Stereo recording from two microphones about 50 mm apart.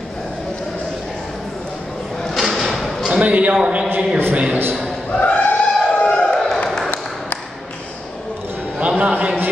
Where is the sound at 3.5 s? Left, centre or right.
Centre.